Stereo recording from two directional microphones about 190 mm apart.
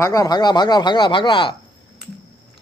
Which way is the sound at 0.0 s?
20° left (ahead or behind).